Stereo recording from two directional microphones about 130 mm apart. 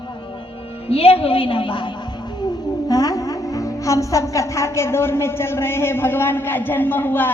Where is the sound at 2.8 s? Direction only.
30° left (ahead or behind).